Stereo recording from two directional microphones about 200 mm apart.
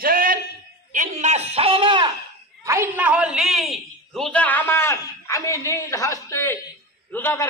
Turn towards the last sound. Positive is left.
turn(degrees=10)  # may be behind; listen again after turning